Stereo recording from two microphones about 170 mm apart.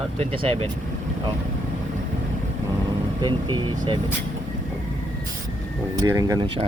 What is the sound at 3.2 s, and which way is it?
Speech, 25° right (ahead or behind).